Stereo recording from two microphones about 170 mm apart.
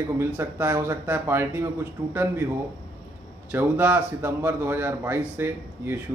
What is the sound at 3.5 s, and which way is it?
A man's voice, 10° right (ahead or behind).